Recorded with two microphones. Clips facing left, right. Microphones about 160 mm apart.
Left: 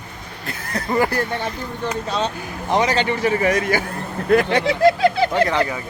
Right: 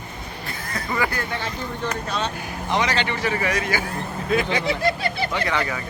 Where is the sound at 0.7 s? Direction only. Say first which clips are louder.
Left 6 dB; 40° left (ahead or behind).